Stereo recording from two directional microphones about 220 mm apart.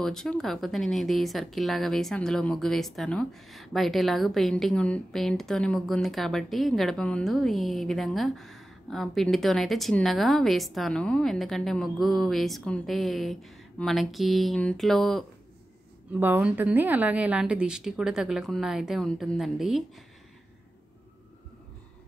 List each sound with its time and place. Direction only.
0.0 s speech: centre (ahead or behind)